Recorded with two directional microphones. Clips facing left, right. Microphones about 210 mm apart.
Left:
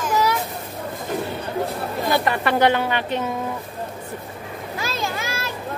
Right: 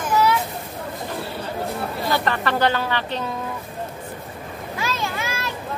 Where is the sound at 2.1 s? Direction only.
15° left (ahead or behind).